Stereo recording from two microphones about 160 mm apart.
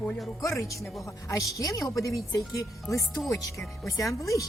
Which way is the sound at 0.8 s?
Centre (ahead or behind).